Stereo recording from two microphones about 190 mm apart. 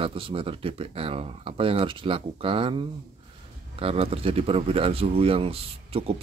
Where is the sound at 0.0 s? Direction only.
30° right (ahead or behind).